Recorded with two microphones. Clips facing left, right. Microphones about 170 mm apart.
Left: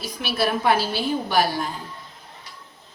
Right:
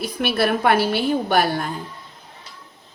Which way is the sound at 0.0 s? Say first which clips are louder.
Right 4 dB; 55° right (ahead or behind).